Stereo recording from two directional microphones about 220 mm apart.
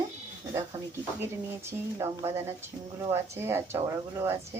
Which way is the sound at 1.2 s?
10° right (ahead or behind).